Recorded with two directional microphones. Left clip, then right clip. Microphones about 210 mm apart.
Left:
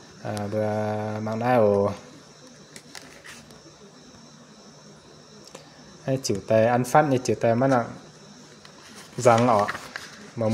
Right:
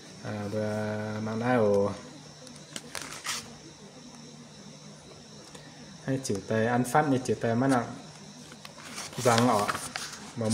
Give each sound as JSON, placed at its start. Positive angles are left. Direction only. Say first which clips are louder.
{"t": 0.2, "sound": "speech", "louder": "left 6 dB", "side_deg": 30}
{"t": 6.0, "sound": "speech", "louder": "left 7 dB", "side_deg": 30}
{"t": 9.2, "sound": "speech", "louder": "left 6 dB", "side_deg": 35}